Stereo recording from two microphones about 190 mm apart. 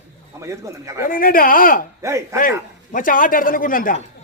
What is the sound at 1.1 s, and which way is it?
Speech, 50° left (ahead or behind).